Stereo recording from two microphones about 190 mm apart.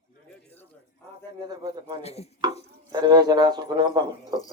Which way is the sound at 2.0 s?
35° left (ahead or behind).